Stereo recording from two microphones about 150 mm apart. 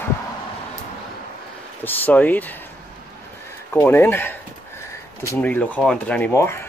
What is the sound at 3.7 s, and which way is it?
Speech, 15° left (ahead or behind).